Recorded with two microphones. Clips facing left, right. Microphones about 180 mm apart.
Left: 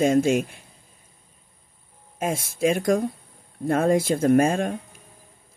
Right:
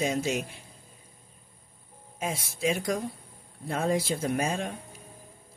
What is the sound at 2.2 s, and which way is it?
Speech, 50° left (ahead or behind).